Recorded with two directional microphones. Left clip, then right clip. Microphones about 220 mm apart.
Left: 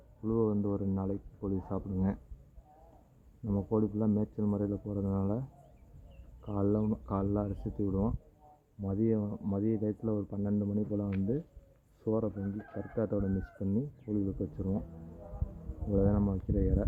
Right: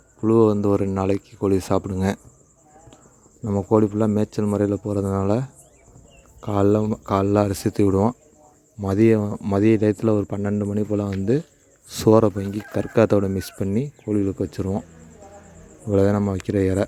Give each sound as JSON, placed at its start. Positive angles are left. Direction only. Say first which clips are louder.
{"t": 0.2, "sound": "speech", "louder": "right 15 dB", "side_deg": -55}
{"t": 3.4, "sound": "speech", "louder": "right 14 dB", "side_deg": -55}
{"t": 11.9, "sound": "speech", "louder": "right 18 dB", "side_deg": -80}
{"t": 13.0, "sound": "speech", "louder": "right 16 dB", "side_deg": -60}
{"t": 15.9, "sound": "speech", "louder": "right 12 dB", "side_deg": -50}